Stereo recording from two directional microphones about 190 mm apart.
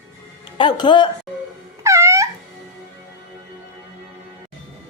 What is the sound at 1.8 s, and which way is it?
Music, 15° right (ahead or behind).